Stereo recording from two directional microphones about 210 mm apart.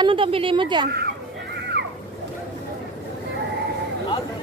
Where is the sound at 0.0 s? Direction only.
25° right (ahead or behind).